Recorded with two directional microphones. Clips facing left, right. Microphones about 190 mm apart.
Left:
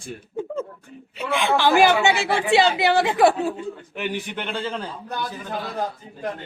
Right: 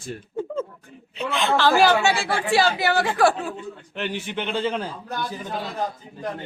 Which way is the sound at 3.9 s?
Centre (ahead or behind).